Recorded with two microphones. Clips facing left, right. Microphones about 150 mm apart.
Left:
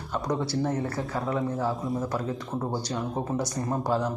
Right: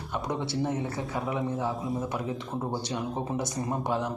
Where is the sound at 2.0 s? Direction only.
20° right (ahead or behind).